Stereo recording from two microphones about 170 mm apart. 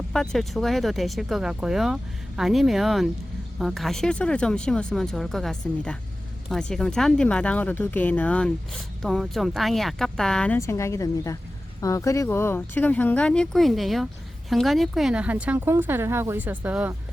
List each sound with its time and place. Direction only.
0.1 s speech: centre (ahead or behind)
10.6 s speech: 15° left (ahead or behind); by 16.9 s 10° right (ahead or behind)